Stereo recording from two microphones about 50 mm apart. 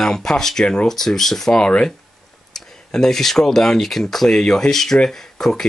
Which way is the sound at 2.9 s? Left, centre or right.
Centre.